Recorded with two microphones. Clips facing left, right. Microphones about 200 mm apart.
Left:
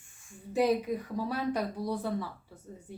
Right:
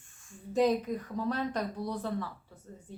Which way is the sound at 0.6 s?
10° left (ahead or behind).